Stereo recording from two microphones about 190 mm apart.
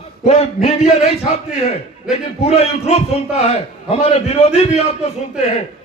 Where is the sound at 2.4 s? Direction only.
35° left (ahead or behind).